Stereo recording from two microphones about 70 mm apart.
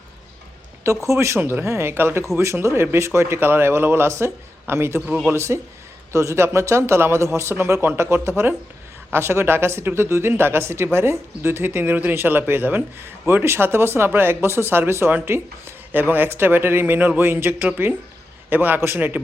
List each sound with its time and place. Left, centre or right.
0.9 s speech: right
5.0 s speech: centre
5.3 s a man's voice: right